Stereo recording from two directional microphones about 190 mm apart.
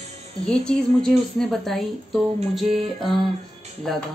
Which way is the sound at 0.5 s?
5° left (ahead or behind).